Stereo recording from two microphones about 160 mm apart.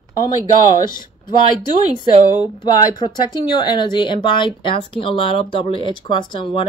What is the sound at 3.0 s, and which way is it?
A woman's voice, 25° left (ahead or behind).